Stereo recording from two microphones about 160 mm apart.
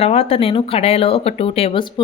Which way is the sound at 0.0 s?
40° left (ahead or behind).